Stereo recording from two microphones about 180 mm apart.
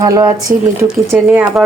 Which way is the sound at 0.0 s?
20° right (ahead or behind).